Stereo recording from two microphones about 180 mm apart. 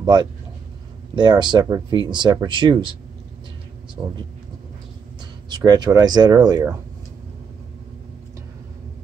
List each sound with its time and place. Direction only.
0.0 s speech: 25° right (ahead or behind)
5.5 s speech: 20° right (ahead or behind)